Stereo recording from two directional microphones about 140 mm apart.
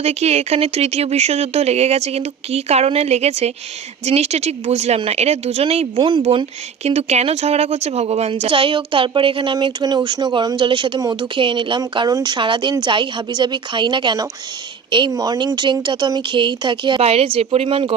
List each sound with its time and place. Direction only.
0.0 s speech: 50° right (ahead or behind); by 17.0 s 35° right (ahead or behind)
17.0 s speech: 45° right (ahead or behind)